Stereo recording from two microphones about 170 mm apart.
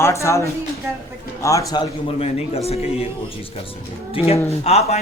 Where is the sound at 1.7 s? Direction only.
30° left (ahead or behind).